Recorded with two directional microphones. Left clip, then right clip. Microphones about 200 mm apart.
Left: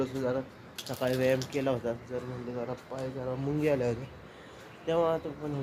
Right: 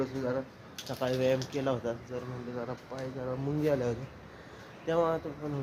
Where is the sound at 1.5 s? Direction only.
5° left (ahead or behind).